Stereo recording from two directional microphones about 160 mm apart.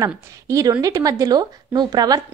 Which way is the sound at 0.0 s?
20° right (ahead or behind).